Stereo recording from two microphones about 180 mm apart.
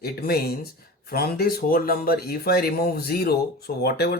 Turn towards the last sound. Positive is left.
turn(degrees=60)  # may be behind; listen again after turning